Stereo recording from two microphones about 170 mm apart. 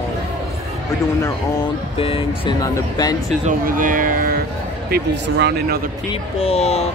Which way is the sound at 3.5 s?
50° right (ahead or behind).